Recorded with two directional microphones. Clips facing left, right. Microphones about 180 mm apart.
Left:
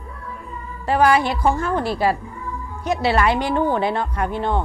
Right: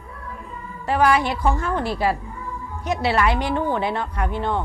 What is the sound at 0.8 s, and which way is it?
Speech, 35° left (ahead or behind).